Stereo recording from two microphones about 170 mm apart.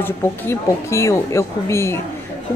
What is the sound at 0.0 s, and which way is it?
Speech, 15° left (ahead or behind).